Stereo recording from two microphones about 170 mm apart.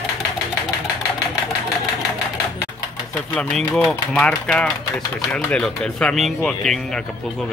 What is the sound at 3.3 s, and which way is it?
A man's voice, 10° left (ahead or behind).